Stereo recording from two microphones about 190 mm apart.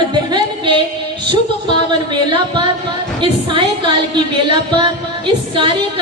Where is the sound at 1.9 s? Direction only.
25° right (ahead or behind).